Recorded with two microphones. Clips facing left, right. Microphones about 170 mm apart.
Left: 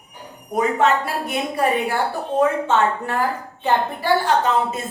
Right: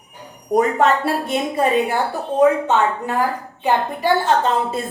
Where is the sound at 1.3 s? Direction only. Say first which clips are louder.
Right 1 dB; 20° right (ahead or behind).